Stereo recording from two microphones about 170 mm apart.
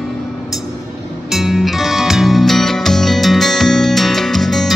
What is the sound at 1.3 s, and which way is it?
Music, centre (ahead or behind).